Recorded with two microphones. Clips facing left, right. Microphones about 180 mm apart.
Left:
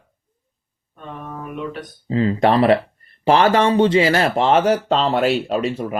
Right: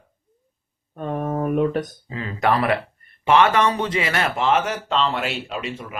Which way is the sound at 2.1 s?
30° left (ahead or behind).